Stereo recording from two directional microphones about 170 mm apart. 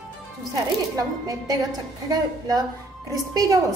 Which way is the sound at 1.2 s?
20° right (ahead or behind).